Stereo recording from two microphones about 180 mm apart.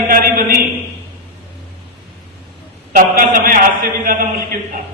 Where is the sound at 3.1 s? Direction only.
50° right (ahead or behind).